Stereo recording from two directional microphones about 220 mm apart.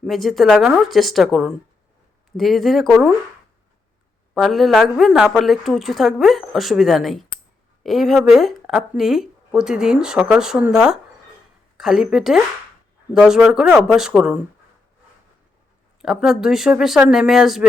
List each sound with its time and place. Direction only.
0.0 s speech: centre (ahead or behind)
4.4 s speech: centre (ahead or behind)
16.0 s speech: centre (ahead or behind)